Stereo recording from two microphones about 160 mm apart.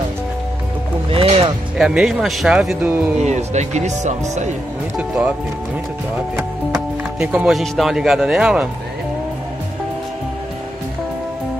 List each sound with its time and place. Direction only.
1.1 s music: 35° right (ahead or behind)
1.8 s speech: 5° right (ahead or behind)
3.2 s speech: 45° right (ahead or behind)
4.9 s speech: 5° right (ahead or behind)
6.7 s speech: 5° right (ahead or behind)